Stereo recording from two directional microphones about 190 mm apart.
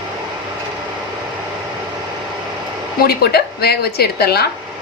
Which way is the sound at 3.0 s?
55° left (ahead or behind).